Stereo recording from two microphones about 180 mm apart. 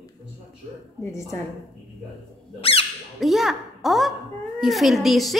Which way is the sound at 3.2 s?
Centre (ahead or behind).